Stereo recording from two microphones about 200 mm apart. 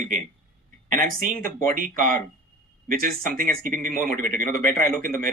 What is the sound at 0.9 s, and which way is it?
Speech, 45° right (ahead or behind).